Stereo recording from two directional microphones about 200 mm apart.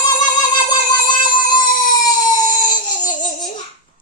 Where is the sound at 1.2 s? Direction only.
20° left (ahead or behind).